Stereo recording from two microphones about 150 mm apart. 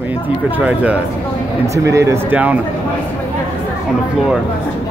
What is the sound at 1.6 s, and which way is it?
Speech, 20° right (ahead or behind).